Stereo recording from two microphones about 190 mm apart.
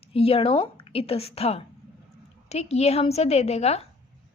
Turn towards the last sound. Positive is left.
turn(degrees=35)  # may be behind; listen again after turning